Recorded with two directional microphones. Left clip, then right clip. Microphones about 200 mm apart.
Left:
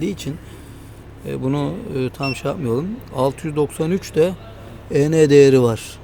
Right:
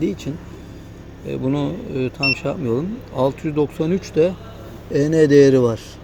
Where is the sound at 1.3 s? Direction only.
25° left (ahead or behind).